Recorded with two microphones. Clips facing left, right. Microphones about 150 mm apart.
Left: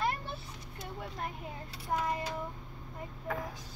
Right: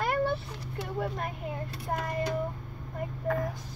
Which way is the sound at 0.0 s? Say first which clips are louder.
Right 7 dB; 65° right (ahead or behind).